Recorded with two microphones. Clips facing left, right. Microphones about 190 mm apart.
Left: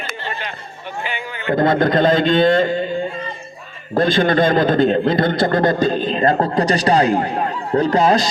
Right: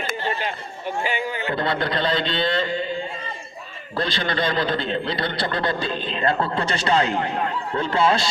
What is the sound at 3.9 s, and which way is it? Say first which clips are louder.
A man's voice: left 10 dB; 50° left (ahead or behind).